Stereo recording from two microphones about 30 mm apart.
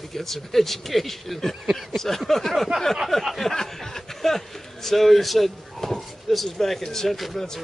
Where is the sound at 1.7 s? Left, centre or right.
Centre.